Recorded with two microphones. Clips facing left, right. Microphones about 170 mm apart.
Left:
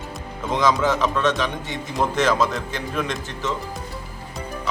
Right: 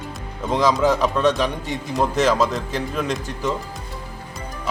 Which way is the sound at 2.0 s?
10° right (ahead or behind).